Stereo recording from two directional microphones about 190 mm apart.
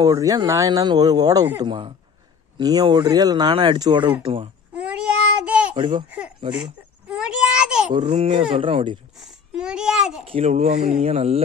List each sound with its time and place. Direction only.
0.0 s speech: 20° right (ahead or behind)
4.7 s child singing: 5° right (ahead or behind)
5.8 s speech: 25° right (ahead or behind)
7.1 s a sound: 5° right (ahead or behind)
7.9 s speech: 30° right (ahead or behind)
9.2 s babbling: 5° right (ahead or behind)
10.2 s speech: 30° right (ahead or behind)